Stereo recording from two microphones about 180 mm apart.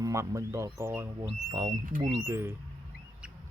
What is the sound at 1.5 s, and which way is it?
Speech, 25° right (ahead or behind).